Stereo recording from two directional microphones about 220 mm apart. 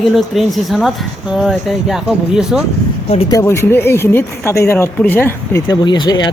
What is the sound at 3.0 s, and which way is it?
Speech, 30° left (ahead or behind).